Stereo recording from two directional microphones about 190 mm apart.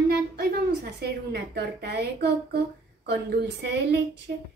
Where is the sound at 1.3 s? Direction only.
55° right (ahead or behind).